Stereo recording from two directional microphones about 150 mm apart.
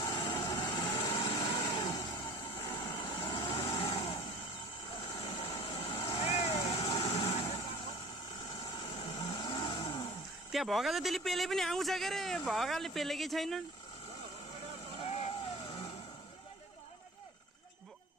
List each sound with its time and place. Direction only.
0.0 s vehicle: 35° left (ahead or behind)
10.5 s a man's voice: centre (ahead or behind)